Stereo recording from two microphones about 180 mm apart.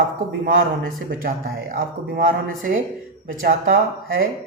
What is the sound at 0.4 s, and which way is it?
Speech, 55° right (ahead or behind).